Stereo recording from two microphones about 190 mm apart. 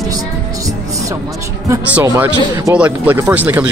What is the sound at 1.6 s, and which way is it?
A man's voice, 15° right (ahead or behind).